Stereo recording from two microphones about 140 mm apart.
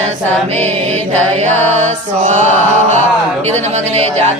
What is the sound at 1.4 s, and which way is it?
Mantra, 55° right (ahead or behind).